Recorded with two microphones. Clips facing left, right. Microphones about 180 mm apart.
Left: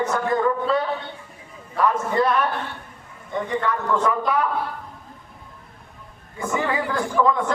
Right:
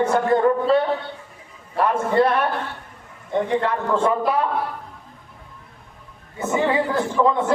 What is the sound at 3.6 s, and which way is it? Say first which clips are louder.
Speech: right 2 dB; 30° right (ahead or behind).